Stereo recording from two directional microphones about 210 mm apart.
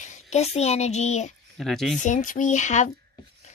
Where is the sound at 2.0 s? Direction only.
35° left (ahead or behind).